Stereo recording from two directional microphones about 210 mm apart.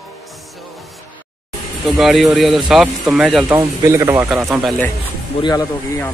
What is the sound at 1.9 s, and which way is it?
Speech, centre (ahead or behind).